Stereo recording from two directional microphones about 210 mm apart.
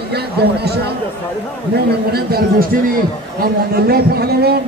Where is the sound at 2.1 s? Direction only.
45° right (ahead or behind).